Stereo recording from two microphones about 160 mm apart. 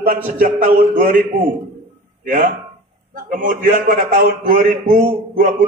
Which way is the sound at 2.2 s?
55° right (ahead or behind).